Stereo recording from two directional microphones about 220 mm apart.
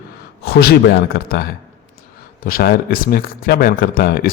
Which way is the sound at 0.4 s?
45° left (ahead or behind).